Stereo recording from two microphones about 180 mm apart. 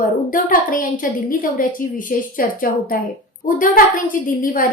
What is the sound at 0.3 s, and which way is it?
A woman's voice, 50° left (ahead or behind).